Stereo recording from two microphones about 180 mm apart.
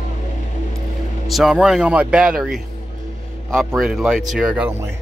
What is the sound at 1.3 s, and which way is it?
A man's voice, centre (ahead or behind).